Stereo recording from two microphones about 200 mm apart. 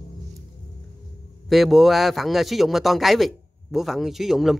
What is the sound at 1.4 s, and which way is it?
Speech, centre (ahead or behind).